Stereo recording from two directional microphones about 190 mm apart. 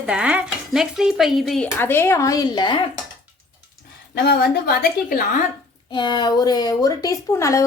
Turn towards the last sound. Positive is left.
turn(degrees=15)  # may be behind; listen again after turning